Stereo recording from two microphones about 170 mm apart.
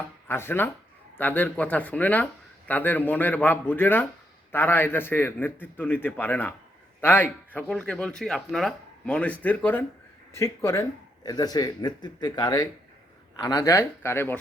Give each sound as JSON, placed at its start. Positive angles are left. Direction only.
{"t": 0.3, "sound": "a man's voice", "side_deg": 15}